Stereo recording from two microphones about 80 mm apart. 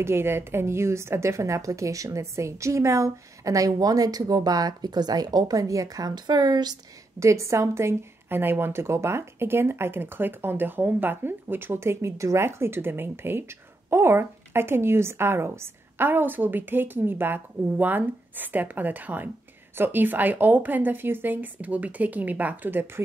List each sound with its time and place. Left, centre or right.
0.0 s a woman's voice: right
7.2 s a woman's voice: right